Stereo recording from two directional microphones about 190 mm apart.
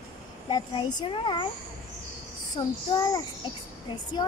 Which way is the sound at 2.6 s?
20° left (ahead or behind).